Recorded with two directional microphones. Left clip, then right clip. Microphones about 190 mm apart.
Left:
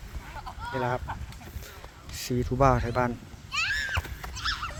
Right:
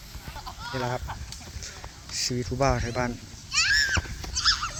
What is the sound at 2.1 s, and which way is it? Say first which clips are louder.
Speech: left 1 dB; 10° left (ahead or behind).